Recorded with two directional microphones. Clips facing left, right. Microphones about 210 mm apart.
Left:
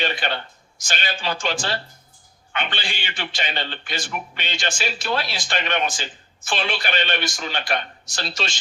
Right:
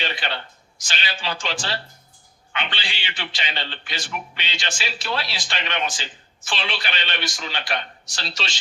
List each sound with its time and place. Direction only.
0.0 s a man's voice: 50° left (ahead or behind)